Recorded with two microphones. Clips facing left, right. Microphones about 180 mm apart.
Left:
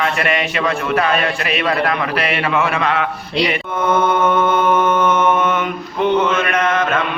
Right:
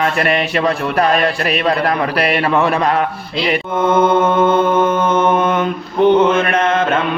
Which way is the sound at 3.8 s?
25° right (ahead or behind).